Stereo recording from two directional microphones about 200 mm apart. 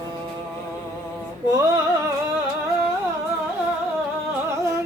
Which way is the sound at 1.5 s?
15° right (ahead or behind).